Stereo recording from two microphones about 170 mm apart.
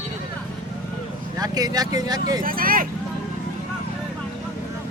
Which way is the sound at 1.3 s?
20° right (ahead or behind).